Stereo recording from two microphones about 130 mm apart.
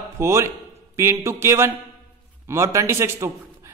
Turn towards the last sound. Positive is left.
turn(degrees=-25)  # may be behind; listen again after turning